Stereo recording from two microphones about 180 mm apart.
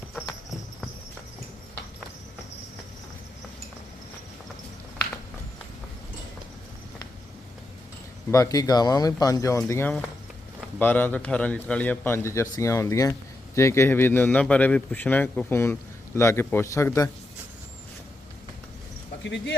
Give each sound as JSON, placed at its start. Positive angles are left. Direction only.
{"t": 8.3, "sound": "a man's voice", "side_deg": 20}
{"t": 19.2, "sound": "speech", "side_deg": 85}